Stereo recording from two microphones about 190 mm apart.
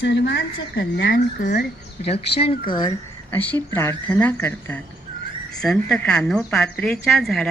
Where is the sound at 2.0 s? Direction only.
30° left (ahead or behind).